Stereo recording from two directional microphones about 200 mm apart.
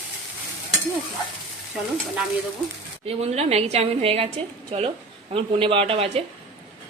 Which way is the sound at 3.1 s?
30° right (ahead or behind).